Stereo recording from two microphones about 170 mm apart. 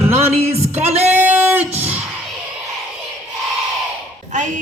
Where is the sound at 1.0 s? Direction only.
10° right (ahead or behind).